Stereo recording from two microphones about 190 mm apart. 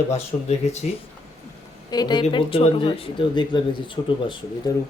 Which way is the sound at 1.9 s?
20° left (ahead or behind).